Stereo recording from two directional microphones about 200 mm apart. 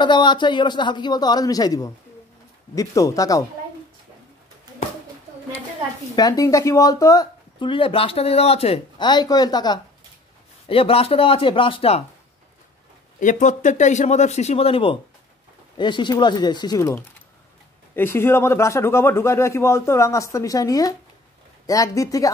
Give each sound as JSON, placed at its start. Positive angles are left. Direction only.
{"t": 0.0, "sound": "a man's voice", "side_deg": 20}
{"t": 6.1, "sound": "speech", "side_deg": 15}
{"t": 13.2, "sound": "a man's voice", "side_deg": 40}